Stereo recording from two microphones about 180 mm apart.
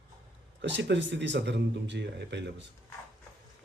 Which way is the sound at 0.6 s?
75° right (ahead or behind).